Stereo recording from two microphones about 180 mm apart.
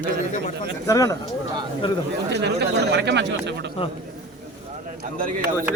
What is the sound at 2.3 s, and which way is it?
Speech, 65° right (ahead or behind).